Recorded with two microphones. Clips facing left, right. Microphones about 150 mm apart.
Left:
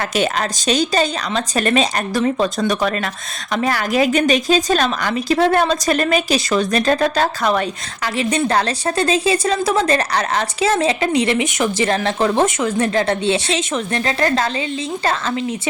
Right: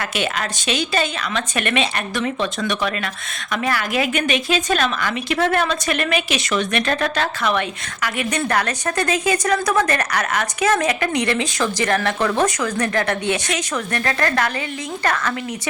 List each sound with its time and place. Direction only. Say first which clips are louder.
0.0 s a woman's voice: left 5 dB; 40° left (ahead or behind)